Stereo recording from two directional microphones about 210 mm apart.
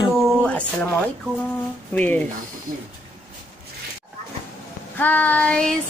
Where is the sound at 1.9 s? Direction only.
5° left (ahead or behind).